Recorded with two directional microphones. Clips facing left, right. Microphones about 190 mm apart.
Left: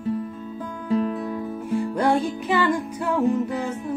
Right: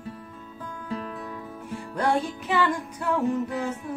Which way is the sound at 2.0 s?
Centre (ahead or behind).